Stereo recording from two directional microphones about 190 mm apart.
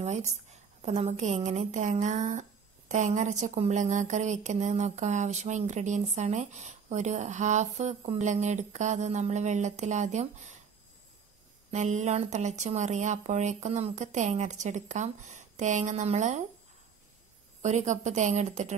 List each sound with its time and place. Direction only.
0.0 s a woman's voice: 35° right (ahead or behind)
11.7 s a woman's voice: 40° right (ahead or behind)
17.6 s a woman's voice: 40° right (ahead or behind)